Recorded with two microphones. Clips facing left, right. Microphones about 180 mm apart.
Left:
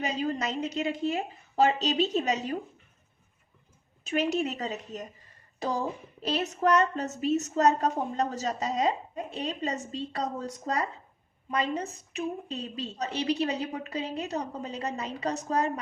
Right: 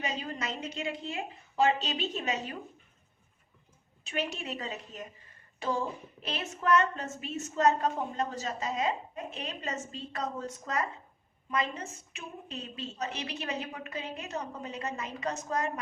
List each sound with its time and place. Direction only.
0.0 s a woman's voice: 40° left (ahead or behind)
4.1 s a woman's voice: 40° left (ahead or behind)